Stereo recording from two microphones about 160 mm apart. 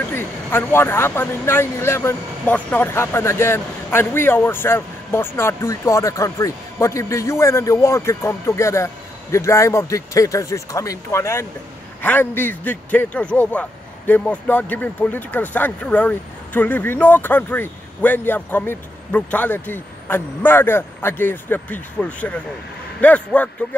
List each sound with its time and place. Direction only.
0.0 s speech: 15° left (ahead or behind)